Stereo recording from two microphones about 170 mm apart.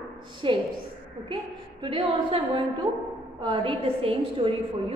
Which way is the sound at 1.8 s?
30° right (ahead or behind).